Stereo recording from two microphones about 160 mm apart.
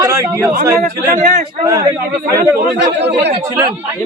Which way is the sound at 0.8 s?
50° right (ahead or behind).